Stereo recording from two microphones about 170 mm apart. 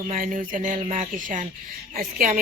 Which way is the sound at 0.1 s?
50° right (ahead or behind).